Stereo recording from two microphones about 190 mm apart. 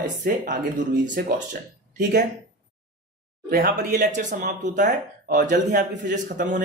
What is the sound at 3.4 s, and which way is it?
Speech, 50° right (ahead or behind).